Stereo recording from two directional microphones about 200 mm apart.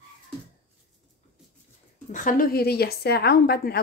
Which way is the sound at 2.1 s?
45° left (ahead or behind).